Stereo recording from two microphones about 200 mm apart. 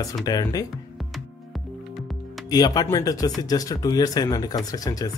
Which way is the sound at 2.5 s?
20° left (ahead or behind).